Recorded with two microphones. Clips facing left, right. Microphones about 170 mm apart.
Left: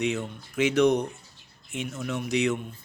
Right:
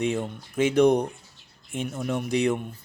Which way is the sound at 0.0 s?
50° right (ahead or behind).